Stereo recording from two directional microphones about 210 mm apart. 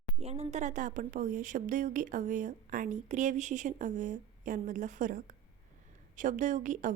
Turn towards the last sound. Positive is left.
turn(degrees=-35)  # may be behind; listen again after turning